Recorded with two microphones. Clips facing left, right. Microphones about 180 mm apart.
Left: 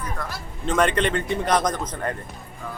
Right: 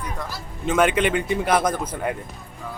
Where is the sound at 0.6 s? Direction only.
5° right (ahead or behind).